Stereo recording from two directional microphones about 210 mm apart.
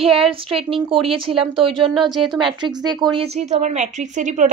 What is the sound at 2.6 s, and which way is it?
A woman's voice, 20° right (ahead or behind).